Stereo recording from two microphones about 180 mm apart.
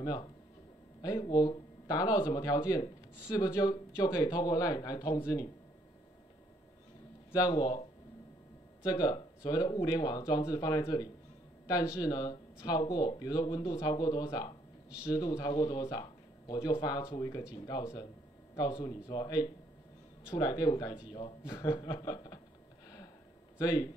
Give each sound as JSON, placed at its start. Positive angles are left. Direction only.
{"t": 0.0, "sound": "speech", "side_deg": 20}
{"t": 7.3, "sound": "speech", "side_deg": 20}
{"t": 8.8, "sound": "speech", "side_deg": 20}
{"t": 23.6, "sound": "speech", "side_deg": 20}